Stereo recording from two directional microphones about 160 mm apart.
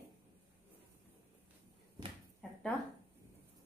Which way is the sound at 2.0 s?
25° right (ahead or behind).